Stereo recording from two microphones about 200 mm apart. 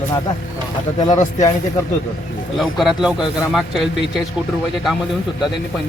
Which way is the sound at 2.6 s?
Centre (ahead or behind).